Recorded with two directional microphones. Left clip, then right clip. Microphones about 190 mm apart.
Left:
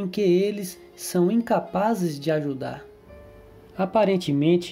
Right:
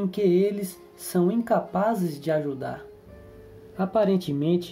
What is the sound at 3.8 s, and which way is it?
Speech, 20° left (ahead or behind).